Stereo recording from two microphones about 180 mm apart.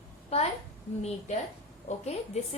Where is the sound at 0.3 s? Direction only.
35° left (ahead or behind).